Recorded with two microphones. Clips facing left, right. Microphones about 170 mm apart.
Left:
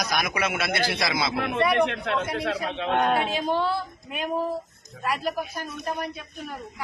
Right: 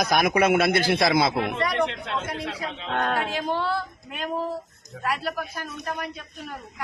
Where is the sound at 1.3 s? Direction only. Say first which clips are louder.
Left 2 dB; 60° left (ahead or behind).